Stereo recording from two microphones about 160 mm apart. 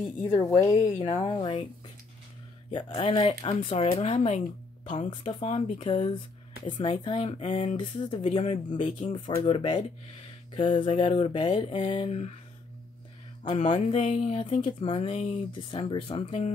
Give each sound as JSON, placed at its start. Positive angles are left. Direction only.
{"t": 0.7, "sound": "speech", "side_deg": 20}
{"t": 2.7, "sound": "speech", "side_deg": 35}
{"t": 5.3, "sound": "speech", "side_deg": 35}
{"t": 13.4, "sound": "speech", "side_deg": 40}